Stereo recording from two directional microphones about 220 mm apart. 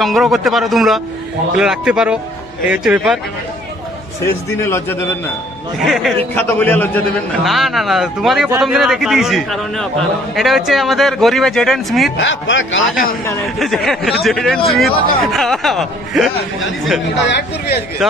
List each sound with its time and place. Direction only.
0.0 s a man's voice: centre (ahead or behind)
4.2 s a man's voice: 10° left (ahead or behind)
5.8 s a man's voice: centre (ahead or behind)
12.2 s a man's voice: 55° left (ahead or behind)
13.6 s a man's voice: centre (ahead or behind)
17.2 s speech: 50° left (ahead or behind)